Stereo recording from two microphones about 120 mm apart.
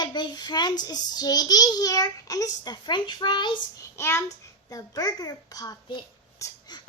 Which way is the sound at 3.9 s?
20° left (ahead or behind).